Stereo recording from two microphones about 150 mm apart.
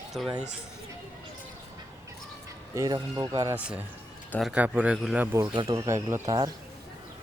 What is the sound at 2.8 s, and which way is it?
Speech, 25° right (ahead or behind).